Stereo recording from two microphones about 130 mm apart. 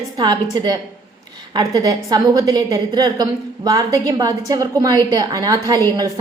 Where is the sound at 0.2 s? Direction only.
35° right (ahead or behind).